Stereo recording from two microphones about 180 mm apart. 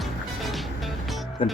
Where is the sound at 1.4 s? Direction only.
30° left (ahead or behind).